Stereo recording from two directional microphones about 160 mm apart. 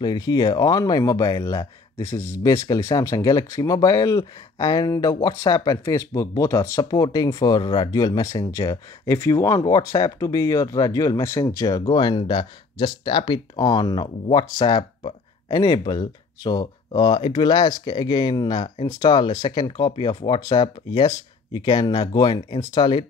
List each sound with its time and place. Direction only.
0.0 s speech: 25° left (ahead or behind)